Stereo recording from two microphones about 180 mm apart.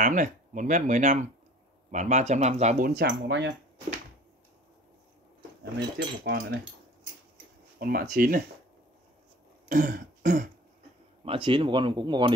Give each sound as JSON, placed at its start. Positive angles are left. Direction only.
{"t": 0.0, "sound": "speech", "side_deg": -45}
{"t": 3.0, "sound": "speech", "side_deg": -75}
{"t": 5.6, "sound": "speech", "side_deg": -75}
{"t": 7.8, "sound": "speech", "side_deg": -55}
{"t": 9.7, "sound": "throat clearing", "side_deg": -50}
{"t": 11.2, "sound": "speech", "side_deg": -30}